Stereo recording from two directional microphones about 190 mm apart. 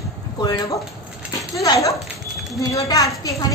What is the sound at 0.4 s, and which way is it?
A woman's voice, 20° left (ahead or behind).